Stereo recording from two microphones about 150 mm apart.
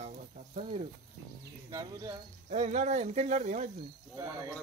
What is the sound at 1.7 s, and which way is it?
Speech, 25° right (ahead or behind).